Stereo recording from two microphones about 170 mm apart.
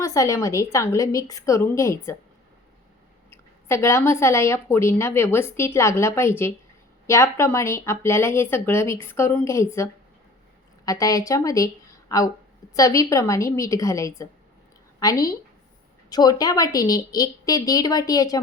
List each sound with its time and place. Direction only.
0.0 s speech: 20° left (ahead or behind)
3.2 s a woman's voice: 15° left (ahead or behind)